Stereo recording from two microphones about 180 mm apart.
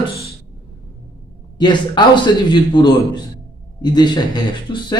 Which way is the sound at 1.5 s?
25° left (ahead or behind).